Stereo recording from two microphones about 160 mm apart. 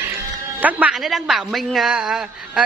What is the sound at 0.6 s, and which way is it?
A man's voice, 10° right (ahead or behind).